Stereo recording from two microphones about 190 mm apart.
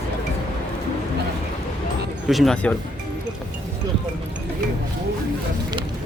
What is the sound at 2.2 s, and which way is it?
Speech, centre (ahead or behind).